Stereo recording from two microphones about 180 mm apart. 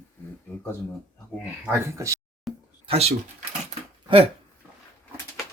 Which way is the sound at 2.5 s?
Centre (ahead or behind).